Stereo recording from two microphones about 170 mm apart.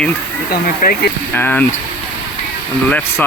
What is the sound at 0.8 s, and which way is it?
Speech, 60° left (ahead or behind).